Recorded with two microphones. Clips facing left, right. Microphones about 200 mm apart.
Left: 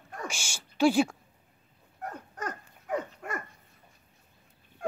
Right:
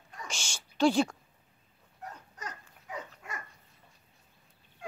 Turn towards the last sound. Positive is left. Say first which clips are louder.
# left 10 dB
turn(degrees=50)  # may be behind; listen again after turning